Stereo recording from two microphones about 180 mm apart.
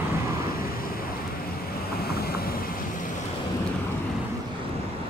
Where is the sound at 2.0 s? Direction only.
60° left (ahead or behind).